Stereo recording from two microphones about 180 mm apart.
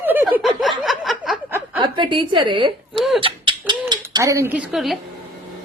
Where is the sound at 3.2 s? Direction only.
25° right (ahead or behind).